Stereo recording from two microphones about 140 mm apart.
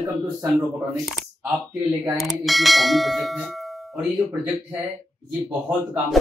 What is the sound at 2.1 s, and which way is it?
Bell, centre (ahead or behind).